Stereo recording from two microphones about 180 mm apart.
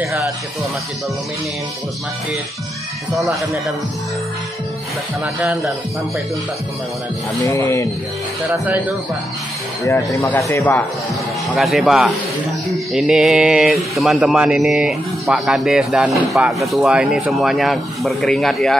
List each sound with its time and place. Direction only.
3.1 s speech: centre (ahead or behind)
7.4 s speech: 15° left (ahead or behind)
8.5 s speech: 10° right (ahead or behind)
10.2 s speech: 15° left (ahead or behind)
11.5 s speech: centre (ahead or behind)